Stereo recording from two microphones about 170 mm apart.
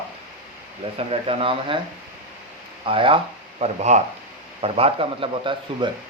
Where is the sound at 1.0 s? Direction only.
35° right (ahead or behind).